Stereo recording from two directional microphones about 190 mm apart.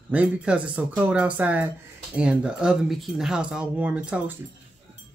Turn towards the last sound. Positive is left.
turn(degrees=-5)  # may be behind; listen again after turning